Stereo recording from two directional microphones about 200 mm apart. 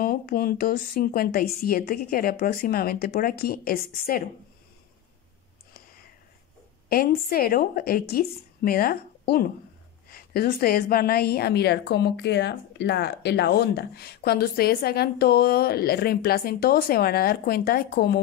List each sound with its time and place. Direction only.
0.0 s a woman's voice: 45° left (ahead or behind)
6.9 s a woman's voice: 50° left (ahead or behind)